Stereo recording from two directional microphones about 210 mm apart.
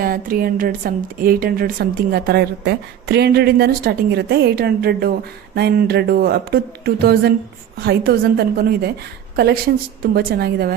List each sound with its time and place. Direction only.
0.0 s a woman's voice: 45° right (ahead or behind)